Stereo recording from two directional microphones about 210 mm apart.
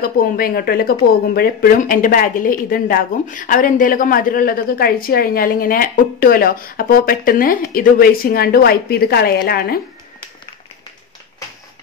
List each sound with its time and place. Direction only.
0.0 s speech: 40° left (ahead or behind)